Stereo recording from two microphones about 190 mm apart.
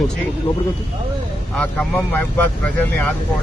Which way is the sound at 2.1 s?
10° left (ahead or behind).